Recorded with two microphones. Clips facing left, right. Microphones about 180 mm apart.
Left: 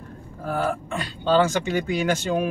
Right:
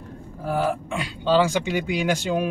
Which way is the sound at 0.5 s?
10° right (ahead or behind).